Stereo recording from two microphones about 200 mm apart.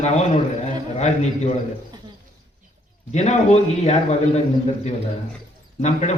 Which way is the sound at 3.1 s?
35° left (ahead or behind).